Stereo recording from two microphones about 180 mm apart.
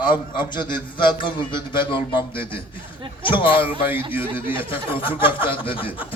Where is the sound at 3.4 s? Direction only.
30° left (ahead or behind).